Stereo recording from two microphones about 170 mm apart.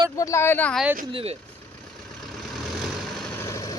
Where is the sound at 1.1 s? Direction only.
35° right (ahead or behind).